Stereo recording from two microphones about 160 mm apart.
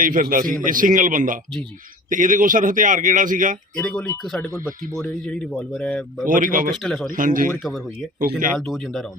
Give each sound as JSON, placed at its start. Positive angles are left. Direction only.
{"t": 0.0, "sound": "a man's voice", "side_deg": -55}
{"t": 3.8, "sound": "speech", "side_deg": 5}
{"t": 6.2, "sound": "a man's voice", "side_deg": -55}
{"t": 6.7, "sound": "speech", "side_deg": 5}
{"t": 7.1, "sound": "a man's voice", "side_deg": -55}
{"t": 7.6, "sound": "speech", "side_deg": 0}